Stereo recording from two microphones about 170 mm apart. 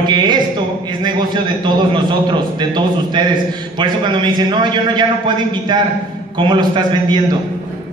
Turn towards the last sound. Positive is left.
turn(degrees=-25)  # may be behind; listen again after turning